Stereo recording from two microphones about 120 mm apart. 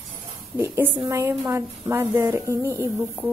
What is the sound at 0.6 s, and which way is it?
A woman's voice, 20° right (ahead or behind).